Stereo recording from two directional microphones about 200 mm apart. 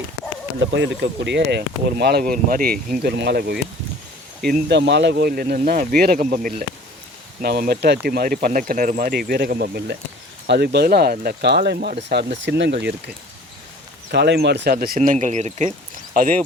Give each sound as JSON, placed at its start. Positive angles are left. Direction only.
{"t": 0.6, "sound": "speech", "side_deg": -60}
{"t": 16.1, "sound": "speech", "side_deg": -45}